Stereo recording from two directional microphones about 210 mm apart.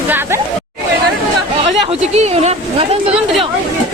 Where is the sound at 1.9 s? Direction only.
30° right (ahead or behind).